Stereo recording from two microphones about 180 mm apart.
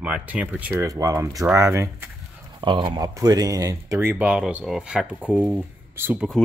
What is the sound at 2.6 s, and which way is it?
Speech, 25° right (ahead or behind).